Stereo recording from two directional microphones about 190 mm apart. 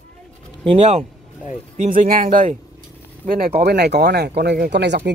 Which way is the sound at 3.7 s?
60° right (ahead or behind).